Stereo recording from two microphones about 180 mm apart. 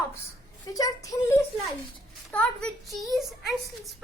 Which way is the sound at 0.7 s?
20° left (ahead or behind).